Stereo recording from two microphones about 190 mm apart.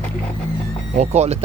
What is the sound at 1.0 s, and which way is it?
Speech, 35° right (ahead or behind).